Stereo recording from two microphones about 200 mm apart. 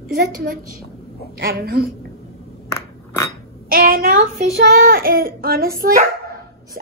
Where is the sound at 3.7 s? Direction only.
45° right (ahead or behind).